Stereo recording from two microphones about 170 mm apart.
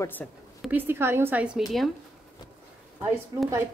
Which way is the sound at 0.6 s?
10° right (ahead or behind).